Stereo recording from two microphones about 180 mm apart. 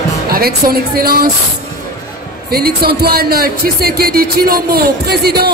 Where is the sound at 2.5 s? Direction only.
60° right (ahead or behind).